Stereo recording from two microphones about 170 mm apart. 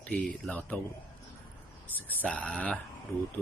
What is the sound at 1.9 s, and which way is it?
Speech, 10° left (ahead or behind).